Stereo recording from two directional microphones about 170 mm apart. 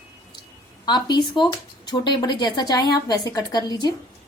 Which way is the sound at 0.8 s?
25° left (ahead or behind).